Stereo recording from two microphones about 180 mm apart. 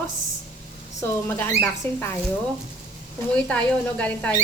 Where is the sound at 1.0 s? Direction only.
10° left (ahead or behind).